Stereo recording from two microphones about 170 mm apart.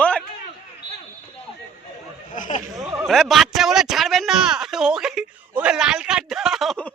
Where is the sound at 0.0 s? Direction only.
5° left (ahead or behind).